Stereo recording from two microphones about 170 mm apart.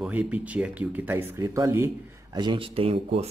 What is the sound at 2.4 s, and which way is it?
Speech, 30° right (ahead or behind).